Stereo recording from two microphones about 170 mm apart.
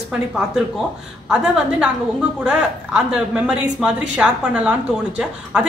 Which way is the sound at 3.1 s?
5° right (ahead or behind).